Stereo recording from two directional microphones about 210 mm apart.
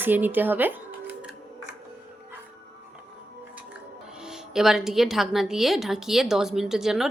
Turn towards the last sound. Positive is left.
turn(degrees=0)  # may be behind; listen again after turning